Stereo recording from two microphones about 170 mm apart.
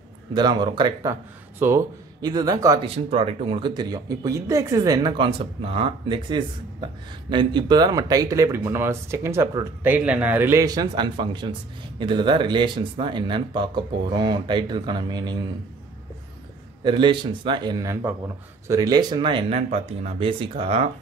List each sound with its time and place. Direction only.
0.3 s speech: 25° right (ahead or behind)
2.9 s speech: 35° right (ahead or behind)
16.8 s speech: 30° right (ahead or behind)